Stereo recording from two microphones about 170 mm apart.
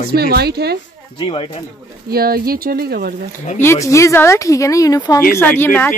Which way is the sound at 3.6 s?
15° left (ahead or behind).